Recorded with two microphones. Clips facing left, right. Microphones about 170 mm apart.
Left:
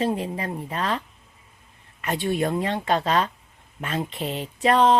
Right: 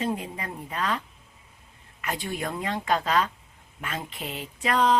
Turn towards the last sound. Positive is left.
turn(degrees=30)  # may be behind; listen again after turning